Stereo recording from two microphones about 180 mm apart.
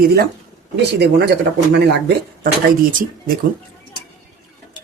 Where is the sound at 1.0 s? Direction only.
70° right (ahead or behind).